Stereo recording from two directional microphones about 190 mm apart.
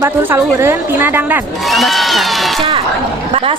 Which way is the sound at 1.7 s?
Centre (ahead or behind).